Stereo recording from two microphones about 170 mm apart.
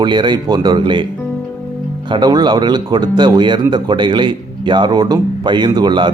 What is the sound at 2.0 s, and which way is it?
Speech, 25° right (ahead or behind).